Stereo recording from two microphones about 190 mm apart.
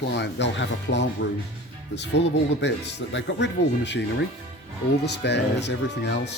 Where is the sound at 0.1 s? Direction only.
65° left (ahead or behind).